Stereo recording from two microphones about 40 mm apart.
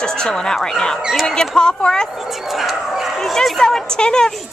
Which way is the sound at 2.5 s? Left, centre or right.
Centre.